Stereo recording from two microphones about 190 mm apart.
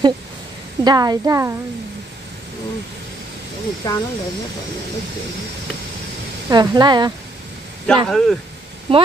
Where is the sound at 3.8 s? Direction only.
15° left (ahead or behind).